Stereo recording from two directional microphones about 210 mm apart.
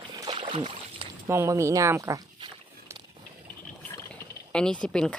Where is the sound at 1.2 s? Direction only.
15° right (ahead or behind).